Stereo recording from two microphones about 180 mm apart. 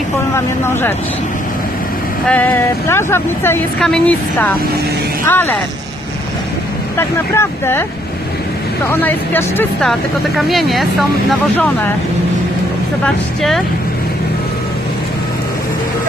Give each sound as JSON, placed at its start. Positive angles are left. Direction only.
{"t": 0.3, "sound": "speech", "side_deg": 15}
{"t": 2.2, "sound": "speech", "side_deg": 10}
{"t": 6.9, "sound": "speech", "side_deg": 15}
{"t": 8.9, "sound": "speech", "side_deg": 10}